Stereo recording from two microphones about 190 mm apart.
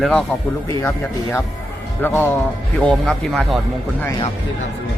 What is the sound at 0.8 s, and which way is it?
A man's voice, 10° left (ahead or behind).